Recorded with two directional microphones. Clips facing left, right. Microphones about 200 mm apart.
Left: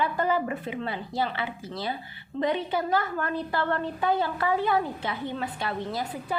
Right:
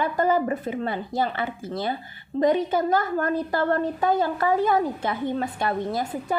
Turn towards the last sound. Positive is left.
turn(degrees=-50)  # may be behind; listen again after turning